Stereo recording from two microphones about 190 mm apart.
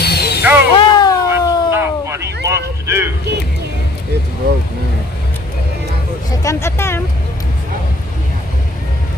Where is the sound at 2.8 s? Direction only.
15° right (ahead or behind).